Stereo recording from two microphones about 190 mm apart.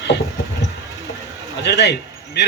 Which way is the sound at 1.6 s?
60° left (ahead or behind).